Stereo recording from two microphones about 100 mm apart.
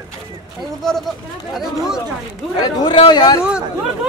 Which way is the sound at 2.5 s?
40° left (ahead or behind).